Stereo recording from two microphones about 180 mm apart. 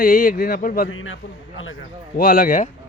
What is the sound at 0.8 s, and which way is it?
Speech, 90° left.